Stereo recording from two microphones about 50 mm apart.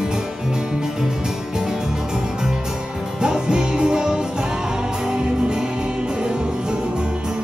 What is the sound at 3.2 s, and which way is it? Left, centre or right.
Music, centre.